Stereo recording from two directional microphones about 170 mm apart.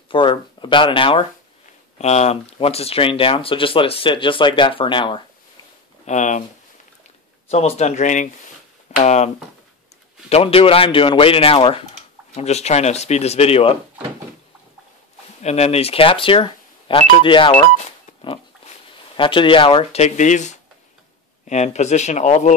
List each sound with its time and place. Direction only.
0.1 s a sound: 30° left (ahead or behind)
2.0 s speech: 40° left (ahead or behind)
6.0 s speech: 45° left (ahead or behind)
7.4 s speech: 40° left (ahead or behind)
10.3 s speech: 35° left (ahead or behind)
15.4 s speech: 40° left (ahead or behind)
19.1 s speech: 30° left (ahead or behind)